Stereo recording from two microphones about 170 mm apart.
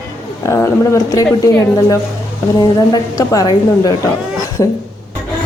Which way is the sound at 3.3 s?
20° left (ahead or behind).